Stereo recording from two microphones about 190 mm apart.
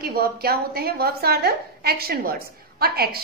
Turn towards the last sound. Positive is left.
turn(degrees=-55)  # may be behind; listen again after turning